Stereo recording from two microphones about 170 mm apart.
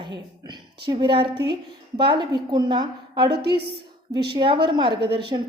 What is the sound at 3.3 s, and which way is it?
Speech, 75° right (ahead or behind).